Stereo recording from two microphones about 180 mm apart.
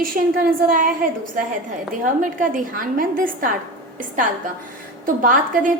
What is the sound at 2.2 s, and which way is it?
A woman's voice, 50° right (ahead or behind).